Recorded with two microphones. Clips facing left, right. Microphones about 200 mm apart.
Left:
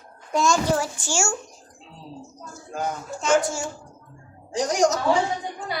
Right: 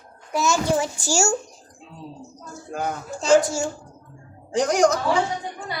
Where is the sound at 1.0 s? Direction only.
40° right (ahead or behind).